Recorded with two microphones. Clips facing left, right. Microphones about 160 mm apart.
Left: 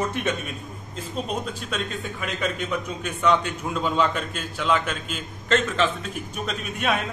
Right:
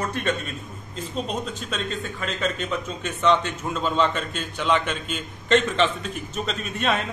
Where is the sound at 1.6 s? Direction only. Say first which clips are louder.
Even; 10° left (ahead or behind).